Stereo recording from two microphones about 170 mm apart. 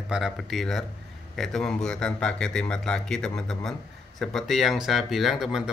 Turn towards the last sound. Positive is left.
turn(degrees=-5)  # may be behind; listen again after turning